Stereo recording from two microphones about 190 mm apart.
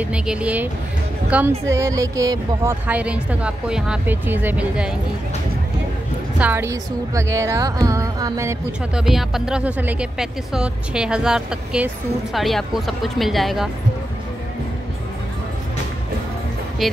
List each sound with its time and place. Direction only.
0.0 s speech: 5° right (ahead or behind)
6.4 s speech: 10° right (ahead or behind)
8.9 s speech: centre (ahead or behind)
16.8 s speech: centre (ahead or behind)